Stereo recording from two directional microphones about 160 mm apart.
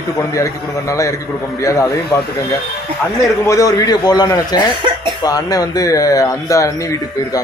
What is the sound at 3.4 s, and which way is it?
Speech, 20° left (ahead or behind).